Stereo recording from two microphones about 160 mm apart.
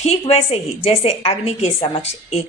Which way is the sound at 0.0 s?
40° left (ahead or behind).